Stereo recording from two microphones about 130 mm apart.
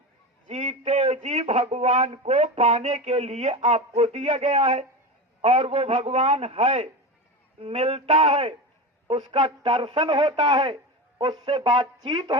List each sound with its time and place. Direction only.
0.4 s speech: 50° right (ahead or behind)